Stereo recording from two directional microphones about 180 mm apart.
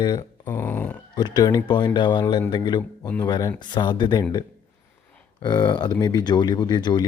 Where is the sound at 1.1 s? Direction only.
20° left (ahead or behind).